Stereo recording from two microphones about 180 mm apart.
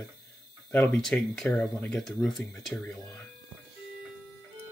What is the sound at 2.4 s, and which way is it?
Speech, 15° left (ahead or behind).